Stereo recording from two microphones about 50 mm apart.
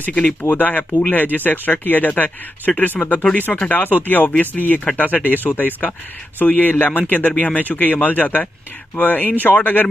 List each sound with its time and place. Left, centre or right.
0.4 s speech: left